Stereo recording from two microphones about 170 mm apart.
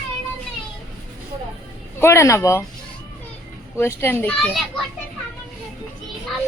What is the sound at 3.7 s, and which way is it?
Speech, 15° left (ahead or behind).